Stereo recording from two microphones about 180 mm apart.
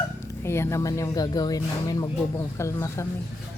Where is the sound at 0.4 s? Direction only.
15° left (ahead or behind).